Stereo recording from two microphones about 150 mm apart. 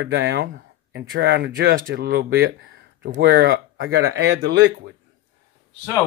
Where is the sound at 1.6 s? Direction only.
80° right.